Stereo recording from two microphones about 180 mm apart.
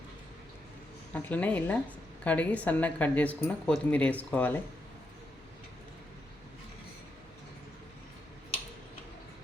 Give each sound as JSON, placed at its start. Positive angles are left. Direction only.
{"t": 1.1, "sound": "speech", "side_deg": 10}